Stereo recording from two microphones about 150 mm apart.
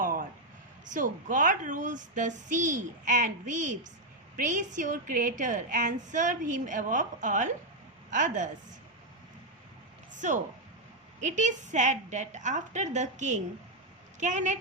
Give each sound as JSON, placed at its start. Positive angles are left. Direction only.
{"t": 0.0, "sound": "a sound", "side_deg": -65}
{"t": 0.9, "sound": "a woman's voice", "side_deg": -60}
{"t": 10.2, "sound": "a woman's voice", "side_deg": -55}